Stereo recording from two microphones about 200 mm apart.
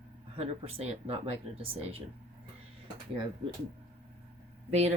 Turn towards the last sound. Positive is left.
turn(degrees=-35)  # may be behind; listen again after turning